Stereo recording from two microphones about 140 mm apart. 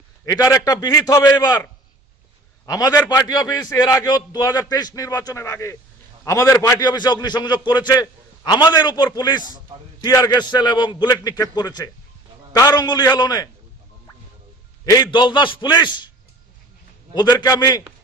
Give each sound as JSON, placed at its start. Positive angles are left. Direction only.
{"t": 0.2, "sound": "a man's voice", "side_deg": 25}
{"t": 2.6, "sound": "a man's voice", "side_deg": 25}
{"t": 14.9, "sound": "a man's voice", "side_deg": 30}
{"t": 17.1, "sound": "a man's voice", "side_deg": 30}